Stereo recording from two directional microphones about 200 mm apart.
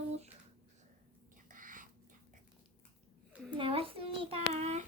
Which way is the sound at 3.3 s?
5° right (ahead or behind).